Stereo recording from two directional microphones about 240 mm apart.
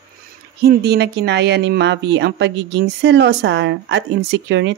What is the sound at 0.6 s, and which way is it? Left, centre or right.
Speech, right.